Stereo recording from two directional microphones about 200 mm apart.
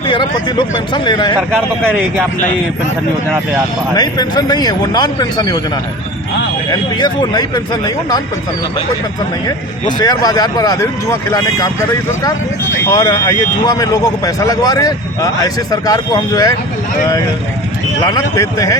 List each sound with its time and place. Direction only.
0.1 s speech: 25° left (ahead or behind)
3.9 s speech: 20° left (ahead or behind)
6.7 s speech: 20° left (ahead or behind)
10.0 s speech: 20° left (ahead or behind)
12.9 s speech: 20° left (ahead or behind)
18.0 s speech: 20° left (ahead or behind)